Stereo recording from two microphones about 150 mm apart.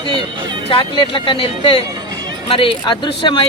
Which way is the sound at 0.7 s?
40° left (ahead or behind).